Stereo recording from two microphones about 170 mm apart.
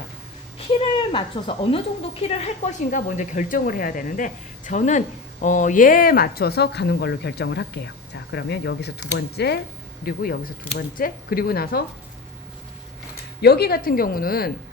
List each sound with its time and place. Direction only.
0.7 s speech: 30° left (ahead or behind); by 9.6 s 75° left (ahead or behind)
10.0 s speech: 60° left (ahead or behind)
13.4 s speech: 70° left (ahead or behind)